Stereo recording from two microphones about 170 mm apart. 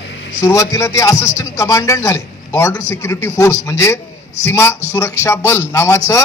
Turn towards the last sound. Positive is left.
turn(degrees=15)  # may be behind; listen again after turning